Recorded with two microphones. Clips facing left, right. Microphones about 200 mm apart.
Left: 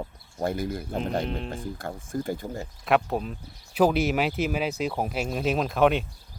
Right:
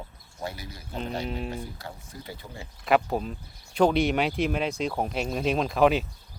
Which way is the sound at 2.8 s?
Centre (ahead or behind).